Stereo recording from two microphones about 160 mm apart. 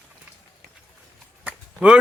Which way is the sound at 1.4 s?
10° right (ahead or behind).